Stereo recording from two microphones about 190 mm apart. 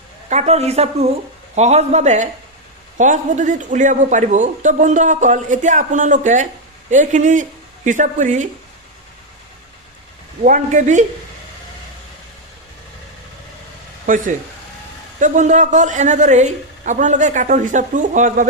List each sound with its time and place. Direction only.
0.3 s a man's voice: 35° right (ahead or behind)
10.4 s a man's voice: 45° right (ahead or behind)
14.1 s a man's voice: 45° right (ahead or behind)